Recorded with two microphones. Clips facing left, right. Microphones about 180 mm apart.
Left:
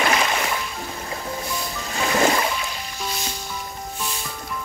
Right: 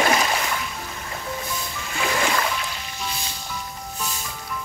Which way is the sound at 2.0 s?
40° left (ahead or behind).